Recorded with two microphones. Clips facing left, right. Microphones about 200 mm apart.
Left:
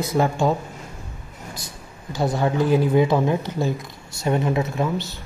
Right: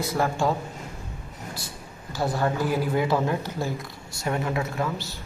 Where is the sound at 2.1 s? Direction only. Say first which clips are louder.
Left 4 dB; 20° left (ahead or behind).